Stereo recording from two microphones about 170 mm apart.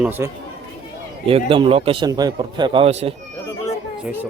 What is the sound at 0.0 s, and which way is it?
Speech, 10° right (ahead or behind).